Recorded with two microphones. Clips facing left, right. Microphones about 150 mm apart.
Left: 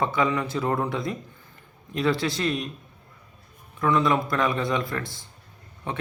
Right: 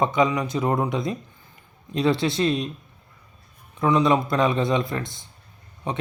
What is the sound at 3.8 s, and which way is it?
Speech, 20° right (ahead or behind).